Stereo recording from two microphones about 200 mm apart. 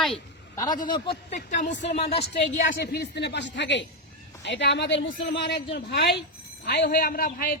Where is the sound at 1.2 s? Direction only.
35° left (ahead or behind).